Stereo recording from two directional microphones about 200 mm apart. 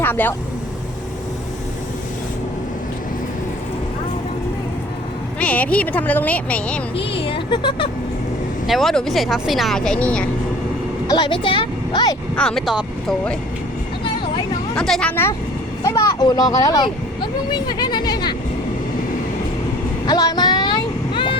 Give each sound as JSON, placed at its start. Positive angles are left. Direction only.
{"t": 0.0, "sound": "speech", "side_deg": 10}
{"t": 5.4, "sound": "speech", "side_deg": 5}
{"t": 6.9, "sound": "speech", "side_deg": 30}
{"t": 8.6, "sound": "speech", "side_deg": 0}
{"t": 11.1, "sound": "speech", "side_deg": 25}
{"t": 12.4, "sound": "speech", "side_deg": 0}
{"t": 14.8, "sound": "speech", "side_deg": 0}
{"t": 20.1, "sound": "vehicle", "side_deg": 20}